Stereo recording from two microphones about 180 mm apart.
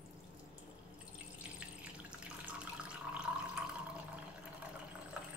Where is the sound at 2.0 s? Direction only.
5° right (ahead or behind).